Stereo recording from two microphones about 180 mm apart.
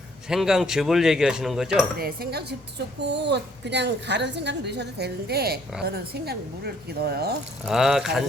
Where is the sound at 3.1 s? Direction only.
75° right (ahead or behind).